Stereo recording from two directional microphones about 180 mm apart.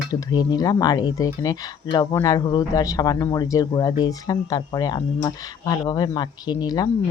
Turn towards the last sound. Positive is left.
turn(degrees=20)  # may be behind; listen again after turning